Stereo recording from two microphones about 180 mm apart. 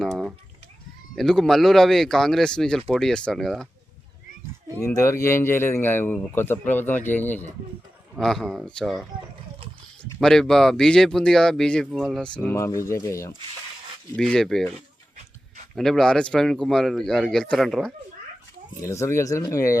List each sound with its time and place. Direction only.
0.0 s a sound: centre (ahead or behind)
1.1 s speech: centre (ahead or behind)
4.9 s speech: 15° left (ahead or behind)
14.2 s speech: 5° left (ahead or behind)
15.7 s speech: centre (ahead or behind)
18.8 s speech: 15° left (ahead or behind)